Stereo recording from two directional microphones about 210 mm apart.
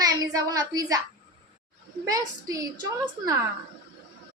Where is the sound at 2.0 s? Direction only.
15° right (ahead or behind).